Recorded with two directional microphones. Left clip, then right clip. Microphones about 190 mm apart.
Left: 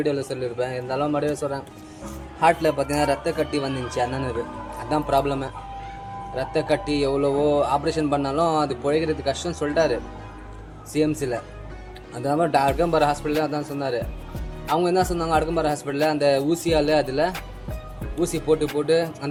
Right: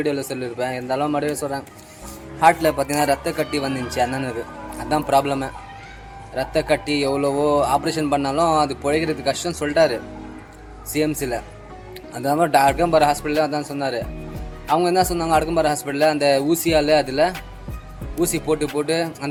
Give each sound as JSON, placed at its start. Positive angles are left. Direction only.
{"t": 0.0, "sound": "a man's voice", "side_deg": -25}